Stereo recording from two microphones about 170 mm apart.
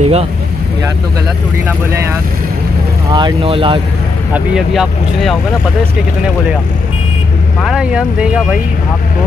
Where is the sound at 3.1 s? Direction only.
25° right (ahead or behind).